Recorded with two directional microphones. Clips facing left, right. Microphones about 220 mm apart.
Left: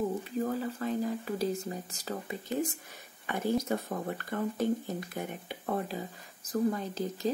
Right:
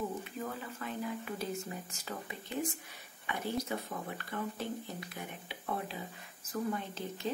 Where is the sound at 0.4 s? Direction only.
35° left (ahead or behind).